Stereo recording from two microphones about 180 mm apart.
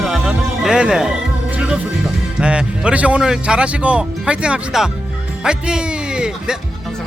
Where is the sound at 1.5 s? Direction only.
5° right (ahead or behind).